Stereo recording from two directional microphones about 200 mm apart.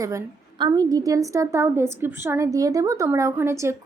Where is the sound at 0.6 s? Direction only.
20° right (ahead or behind).